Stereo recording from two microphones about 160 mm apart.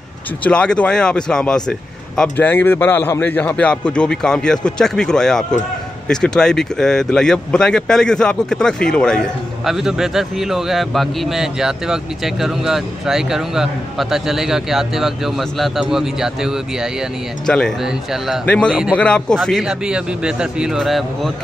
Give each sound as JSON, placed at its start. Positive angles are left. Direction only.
{"t": 0.4, "sound": "a man's voice", "side_deg": 5}